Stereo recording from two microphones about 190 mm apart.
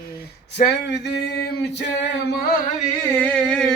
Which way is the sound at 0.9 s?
60° left (ahead or behind).